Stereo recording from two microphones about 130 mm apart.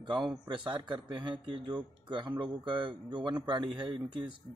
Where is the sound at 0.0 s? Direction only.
35° right (ahead or behind).